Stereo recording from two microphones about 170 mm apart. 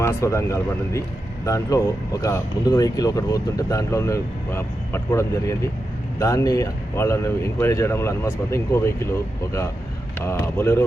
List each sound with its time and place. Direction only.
0.0 s speech: 15° left (ahead or behind)
10.2 s speech: 15° left (ahead or behind)